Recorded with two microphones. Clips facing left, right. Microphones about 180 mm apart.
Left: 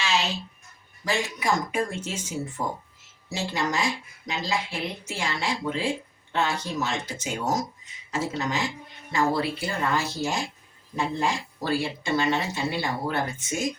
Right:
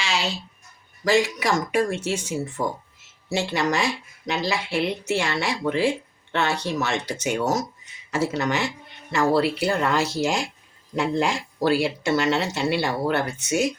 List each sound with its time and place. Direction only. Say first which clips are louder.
1.0 s speech: right 6 dB; 90° right; by 13.7 s 75° right (ahead or behind)